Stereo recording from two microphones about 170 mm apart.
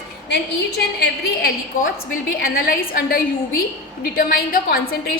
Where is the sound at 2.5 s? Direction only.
60° left (ahead or behind).